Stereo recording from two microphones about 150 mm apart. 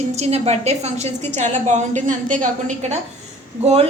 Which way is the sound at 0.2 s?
45° right (ahead or behind).